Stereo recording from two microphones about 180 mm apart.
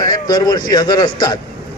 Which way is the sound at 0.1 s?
20° left (ahead or behind).